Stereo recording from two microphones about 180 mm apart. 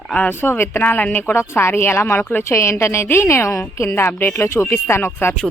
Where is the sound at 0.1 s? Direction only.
10° left (ahead or behind).